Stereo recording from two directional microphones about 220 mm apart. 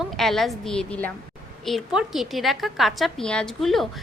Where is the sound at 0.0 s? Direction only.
Centre (ahead or behind).